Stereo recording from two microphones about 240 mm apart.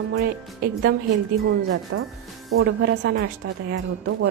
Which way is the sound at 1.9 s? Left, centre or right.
Right.